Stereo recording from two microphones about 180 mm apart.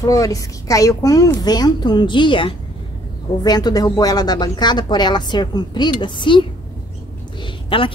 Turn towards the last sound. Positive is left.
turn(degrees=30)  # may be behind; listen again after turning